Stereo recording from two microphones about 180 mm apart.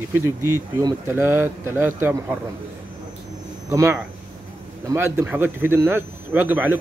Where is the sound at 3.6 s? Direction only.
15° right (ahead or behind).